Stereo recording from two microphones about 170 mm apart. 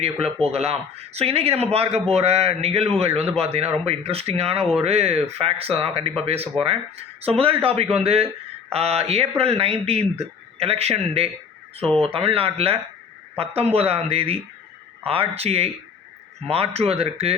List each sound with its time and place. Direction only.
0.0 s speech: 35° right (ahead or behind)